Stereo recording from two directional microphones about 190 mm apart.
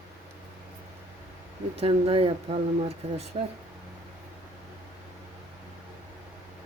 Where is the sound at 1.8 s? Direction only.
30° right (ahead or behind).